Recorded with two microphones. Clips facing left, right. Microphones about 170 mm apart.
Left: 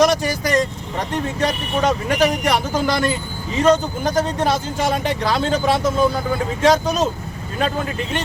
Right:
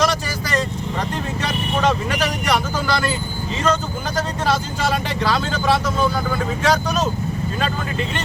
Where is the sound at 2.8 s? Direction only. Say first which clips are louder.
Left 2 dB; 20° left (ahead or behind).